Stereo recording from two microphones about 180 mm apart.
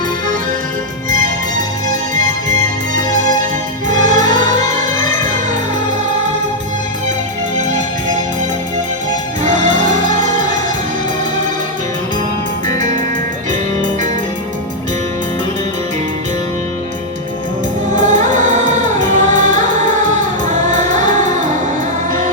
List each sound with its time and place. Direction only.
3.8 s music: 45° right (ahead or behind)
9.4 s music: 45° right (ahead or behind)
13.5 s music: 45° right (ahead or behind)
17.9 s music: 45° right (ahead or behind)